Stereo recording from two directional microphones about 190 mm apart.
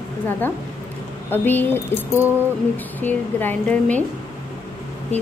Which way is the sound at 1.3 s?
10° left (ahead or behind).